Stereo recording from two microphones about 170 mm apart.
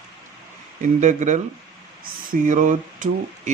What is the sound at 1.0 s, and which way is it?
Speech, 45° right (ahead or behind).